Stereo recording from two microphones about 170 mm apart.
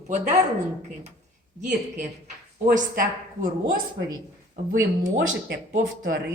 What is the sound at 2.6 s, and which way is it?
Speech, 60° right (ahead or behind).